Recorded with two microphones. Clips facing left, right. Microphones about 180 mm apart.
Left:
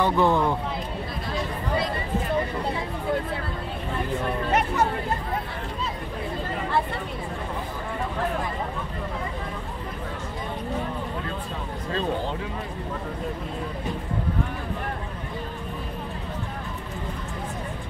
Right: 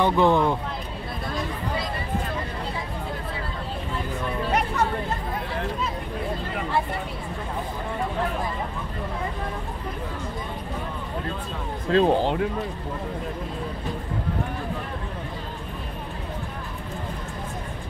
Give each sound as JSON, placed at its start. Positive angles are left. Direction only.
{"t": 0.0, "sound": "speech", "side_deg": -15}
{"t": 4.5, "sound": "a sound", "side_deg": 5}
{"t": 11.9, "sound": "speech", "side_deg": -75}